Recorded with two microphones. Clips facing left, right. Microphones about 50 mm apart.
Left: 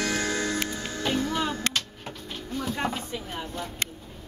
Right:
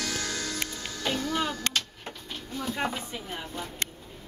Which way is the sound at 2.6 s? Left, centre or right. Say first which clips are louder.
Left 1 dB; centre.